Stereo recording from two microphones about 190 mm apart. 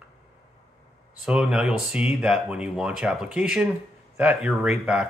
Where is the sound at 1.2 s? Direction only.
5° right (ahead or behind).